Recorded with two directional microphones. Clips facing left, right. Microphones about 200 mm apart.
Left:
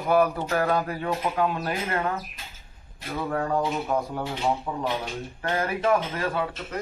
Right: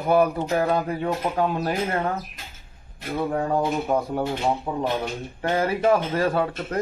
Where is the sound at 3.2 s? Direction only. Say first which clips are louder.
Right 2 dB; 25° right (ahead or behind).